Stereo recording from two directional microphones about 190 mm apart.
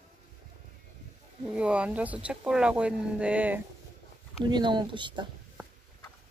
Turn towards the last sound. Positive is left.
turn(degrees=-25)  # may be behind; listen again after turning